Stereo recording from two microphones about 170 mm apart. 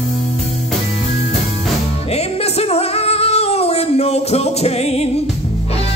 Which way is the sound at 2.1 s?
35° left (ahead or behind).